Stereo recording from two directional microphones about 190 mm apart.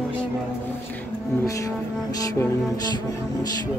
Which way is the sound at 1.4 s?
15° left (ahead or behind).